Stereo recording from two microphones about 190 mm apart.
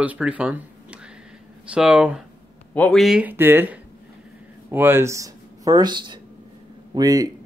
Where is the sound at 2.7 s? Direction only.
5° left (ahead or behind).